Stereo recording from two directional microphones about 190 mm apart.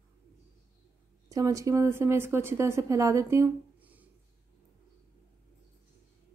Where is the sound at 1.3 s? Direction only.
15° right (ahead or behind).